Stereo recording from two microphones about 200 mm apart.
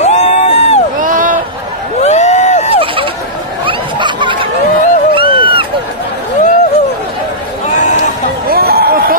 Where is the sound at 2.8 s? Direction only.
25° right (ahead or behind).